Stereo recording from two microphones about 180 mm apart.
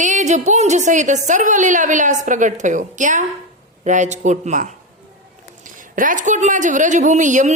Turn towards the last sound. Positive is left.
turn(degrees=-45)  # may be behind; listen again after turning